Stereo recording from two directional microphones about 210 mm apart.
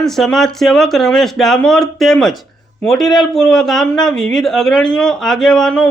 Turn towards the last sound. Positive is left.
turn(degrees=5)  # may be behind; listen again after turning